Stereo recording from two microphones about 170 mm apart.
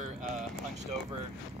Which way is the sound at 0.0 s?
50° right (ahead or behind).